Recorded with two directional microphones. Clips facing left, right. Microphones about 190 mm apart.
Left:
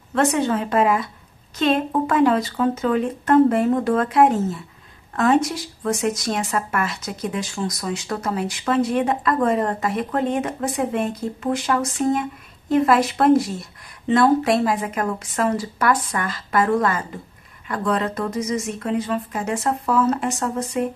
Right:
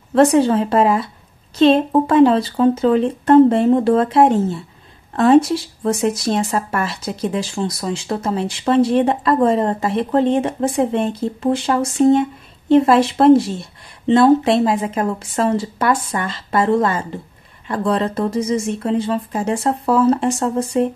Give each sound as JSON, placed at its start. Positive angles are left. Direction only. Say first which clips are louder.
{"t": 0.1, "sound": "speech", "louder": "right 7 dB", "side_deg": -30}